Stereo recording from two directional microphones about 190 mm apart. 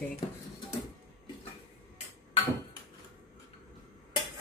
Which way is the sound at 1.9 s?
25° left (ahead or behind).